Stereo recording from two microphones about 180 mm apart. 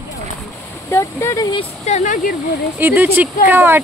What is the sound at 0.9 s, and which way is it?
Speech, 15° left (ahead or behind).